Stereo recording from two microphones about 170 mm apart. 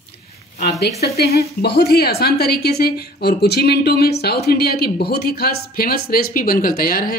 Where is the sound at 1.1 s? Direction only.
65° left (ahead or behind).